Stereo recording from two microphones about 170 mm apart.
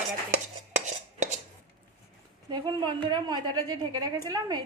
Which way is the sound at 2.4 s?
30° right (ahead or behind).